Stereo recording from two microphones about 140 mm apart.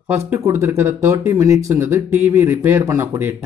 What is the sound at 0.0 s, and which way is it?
Speech, 20° right (ahead or behind).